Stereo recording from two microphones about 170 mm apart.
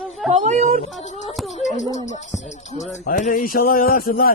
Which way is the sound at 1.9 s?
40° left (ahead or behind).